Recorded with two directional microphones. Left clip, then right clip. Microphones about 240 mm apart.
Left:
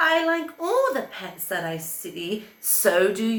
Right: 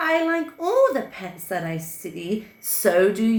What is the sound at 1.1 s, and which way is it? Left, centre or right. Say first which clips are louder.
Speech: right 1 dB; centre.